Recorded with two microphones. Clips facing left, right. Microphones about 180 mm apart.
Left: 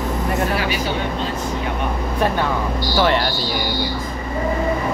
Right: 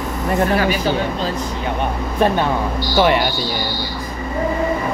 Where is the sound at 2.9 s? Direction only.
15° right (ahead or behind).